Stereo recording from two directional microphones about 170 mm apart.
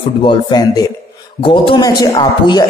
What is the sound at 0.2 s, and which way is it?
A man's voice, 25° left (ahead or behind).